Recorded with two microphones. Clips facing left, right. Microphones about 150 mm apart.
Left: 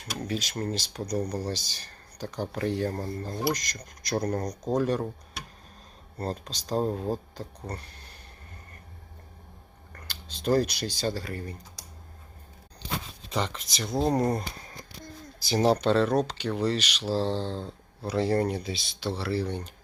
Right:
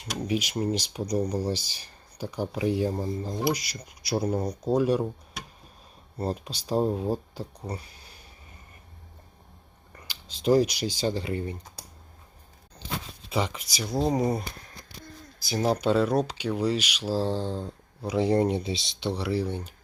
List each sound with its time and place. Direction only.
0.0 s speech: 15° right (ahead or behind)
6.1 s speech: 10° right (ahead or behind)
9.9 s speech: 10° right (ahead or behind)
13.3 s speech: 10° right (ahead or behind)
15.5 s speech: 35° left (ahead or behind)
15.8 s speech: 10° right (ahead or behind)